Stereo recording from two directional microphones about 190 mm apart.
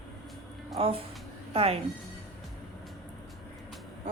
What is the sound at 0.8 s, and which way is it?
A woman's voice, 30° right (ahead or behind).